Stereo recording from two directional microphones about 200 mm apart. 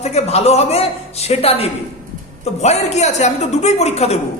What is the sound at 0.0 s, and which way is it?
A man's voice, 35° left (ahead or behind).